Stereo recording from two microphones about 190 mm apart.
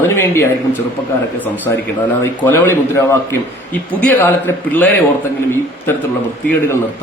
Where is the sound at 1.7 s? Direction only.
15° left (ahead or behind).